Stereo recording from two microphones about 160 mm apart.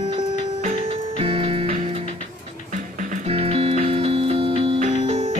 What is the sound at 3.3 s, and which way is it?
Music, 40° right (ahead or behind).